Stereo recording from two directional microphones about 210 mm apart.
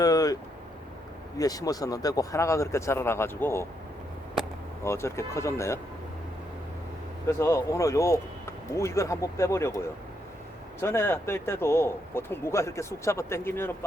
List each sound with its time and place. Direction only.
0.0 s vehicle: 15° left (ahead or behind)
1.4 s speech: 15° left (ahead or behind)
4.8 s speech: 10° left (ahead or behind)
7.3 s speech: 15° left (ahead or behind)